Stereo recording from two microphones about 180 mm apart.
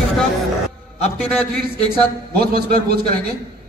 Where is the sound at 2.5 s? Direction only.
60° right (ahead or behind).